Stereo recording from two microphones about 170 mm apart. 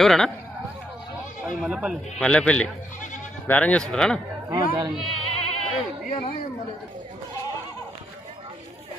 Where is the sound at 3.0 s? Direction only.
50° left (ahead or behind).